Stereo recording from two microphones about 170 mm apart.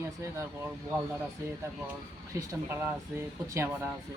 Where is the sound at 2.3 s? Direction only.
20° right (ahead or behind).